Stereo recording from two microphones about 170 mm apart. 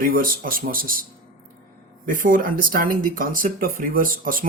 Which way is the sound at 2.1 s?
55° right (ahead or behind).